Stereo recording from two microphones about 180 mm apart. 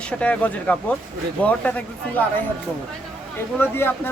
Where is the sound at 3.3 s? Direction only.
10° left (ahead or behind).